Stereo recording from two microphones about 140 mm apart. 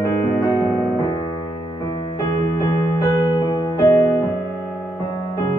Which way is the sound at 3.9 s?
25° left (ahead or behind).